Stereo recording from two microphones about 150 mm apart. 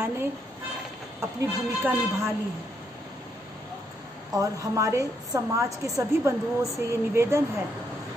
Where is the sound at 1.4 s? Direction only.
20° right (ahead or behind).